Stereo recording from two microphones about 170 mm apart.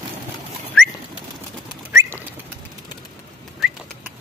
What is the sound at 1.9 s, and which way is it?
Bird, 10° right (ahead or behind).